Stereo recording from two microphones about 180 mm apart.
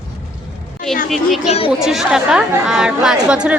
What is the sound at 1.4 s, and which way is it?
Speech, 35° left (ahead or behind).